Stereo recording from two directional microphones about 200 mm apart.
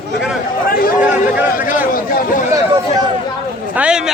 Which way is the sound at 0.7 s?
45° left (ahead or behind).